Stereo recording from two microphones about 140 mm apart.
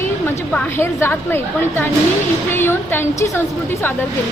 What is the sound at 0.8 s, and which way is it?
Speech, 20° left (ahead or behind).